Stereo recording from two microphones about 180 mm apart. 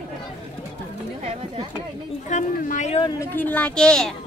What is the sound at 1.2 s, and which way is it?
Speech, 30° right (ahead or behind).